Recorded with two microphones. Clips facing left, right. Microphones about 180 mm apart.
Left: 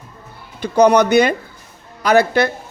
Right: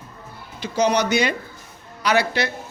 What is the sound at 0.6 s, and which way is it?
A man's voice, 55° left (ahead or behind).